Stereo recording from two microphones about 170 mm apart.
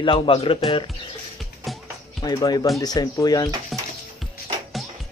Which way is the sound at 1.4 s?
Centre (ahead or behind).